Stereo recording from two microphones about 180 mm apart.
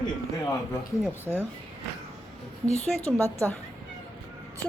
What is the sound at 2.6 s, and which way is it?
Speech, 35° left (ahead or behind).